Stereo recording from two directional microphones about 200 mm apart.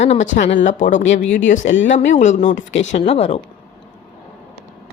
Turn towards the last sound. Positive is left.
turn(degrees=30)  # may be behind; listen again after turning